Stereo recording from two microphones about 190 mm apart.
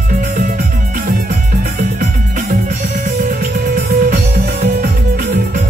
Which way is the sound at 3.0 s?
50° right (ahead or behind).